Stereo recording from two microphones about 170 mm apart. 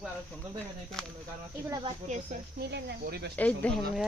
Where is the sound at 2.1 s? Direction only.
45° right (ahead or behind).